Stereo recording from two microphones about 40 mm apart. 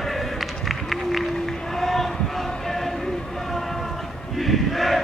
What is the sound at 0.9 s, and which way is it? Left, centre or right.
Run, centre.